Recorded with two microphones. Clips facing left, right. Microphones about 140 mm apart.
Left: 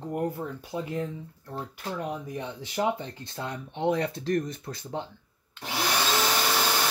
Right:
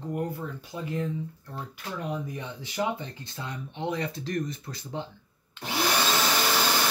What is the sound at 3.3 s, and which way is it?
Speech, 55° left (ahead or behind).